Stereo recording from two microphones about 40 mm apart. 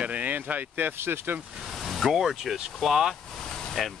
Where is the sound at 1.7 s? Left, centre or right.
Centre.